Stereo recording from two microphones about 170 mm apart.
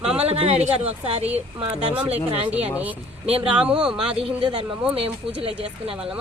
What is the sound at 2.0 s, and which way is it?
Speech, 5° right (ahead or behind).